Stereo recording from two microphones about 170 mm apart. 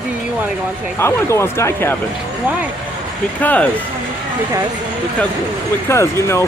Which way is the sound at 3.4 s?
10° left (ahead or behind).